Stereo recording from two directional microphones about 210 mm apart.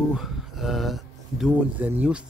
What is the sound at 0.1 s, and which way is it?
Speech, centre (ahead or behind).